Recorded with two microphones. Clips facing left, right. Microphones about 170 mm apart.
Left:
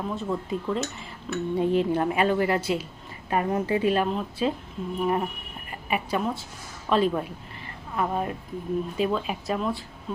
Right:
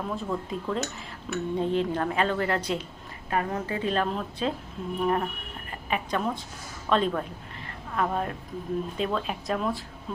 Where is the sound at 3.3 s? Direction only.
20° left (ahead or behind).